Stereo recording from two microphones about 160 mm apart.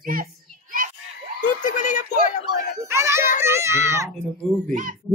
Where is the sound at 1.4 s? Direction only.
55° left (ahead or behind).